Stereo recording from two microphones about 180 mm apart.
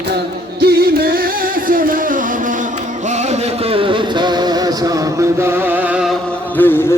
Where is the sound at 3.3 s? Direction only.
30° right (ahead or behind).